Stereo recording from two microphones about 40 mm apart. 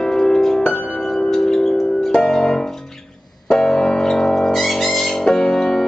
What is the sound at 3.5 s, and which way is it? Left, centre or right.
Piano, centre.